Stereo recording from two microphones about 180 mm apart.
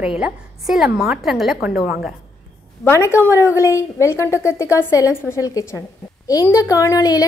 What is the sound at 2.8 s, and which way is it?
A woman's voice, 15° left (ahead or behind).